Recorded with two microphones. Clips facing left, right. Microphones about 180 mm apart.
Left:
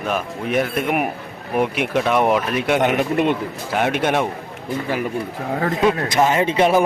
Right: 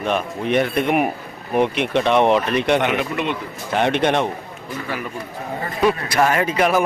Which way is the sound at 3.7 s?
5° left (ahead or behind).